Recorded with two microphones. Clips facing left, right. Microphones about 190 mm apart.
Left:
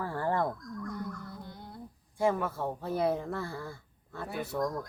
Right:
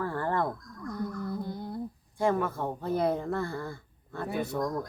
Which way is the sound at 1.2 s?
40° right (ahead or behind).